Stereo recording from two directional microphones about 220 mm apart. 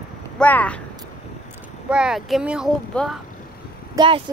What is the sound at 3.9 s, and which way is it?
Speech, 20° right (ahead or behind).